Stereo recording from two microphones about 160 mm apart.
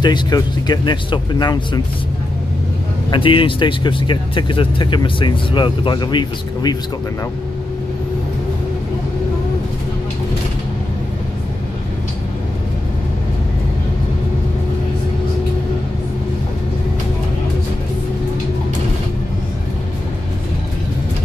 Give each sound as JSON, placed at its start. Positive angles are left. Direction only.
{"t": 0.0, "sound": "speech", "side_deg": 25}
{"t": 3.1, "sound": "speech", "side_deg": 30}